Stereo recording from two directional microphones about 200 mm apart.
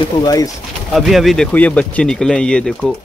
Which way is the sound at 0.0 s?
20° left (ahead or behind).